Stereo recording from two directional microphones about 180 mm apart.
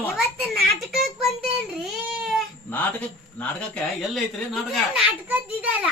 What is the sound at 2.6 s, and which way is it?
A man's voice, 10° left (ahead or behind).